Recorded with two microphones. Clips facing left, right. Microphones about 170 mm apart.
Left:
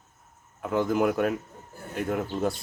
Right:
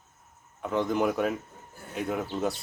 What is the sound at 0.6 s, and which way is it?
Speech, 5° left (ahead or behind).